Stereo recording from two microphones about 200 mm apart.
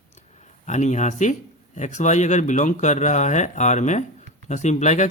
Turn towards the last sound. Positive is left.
turn(degrees=35)  # may be behind; listen again after turning